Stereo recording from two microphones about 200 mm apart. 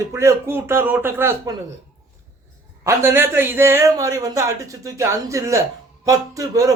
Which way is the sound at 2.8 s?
15° right (ahead or behind).